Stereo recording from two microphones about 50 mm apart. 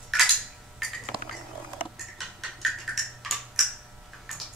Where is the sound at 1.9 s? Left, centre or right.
Centre.